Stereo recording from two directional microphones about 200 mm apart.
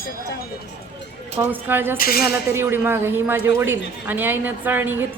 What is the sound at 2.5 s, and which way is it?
A woman's voice, 10° right (ahead or behind).